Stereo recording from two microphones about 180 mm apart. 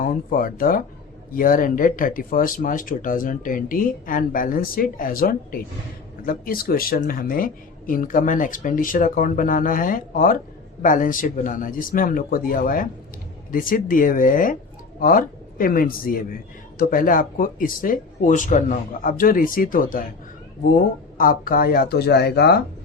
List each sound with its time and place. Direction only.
0.0 s a man's voice: 50° left (ahead or behind)
21.2 s speech: 50° left (ahead or behind); by 22.6 s 65° left (ahead or behind)